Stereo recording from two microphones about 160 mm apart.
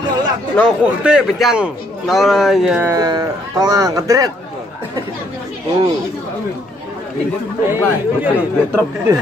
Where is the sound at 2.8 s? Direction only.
20° right (ahead or behind).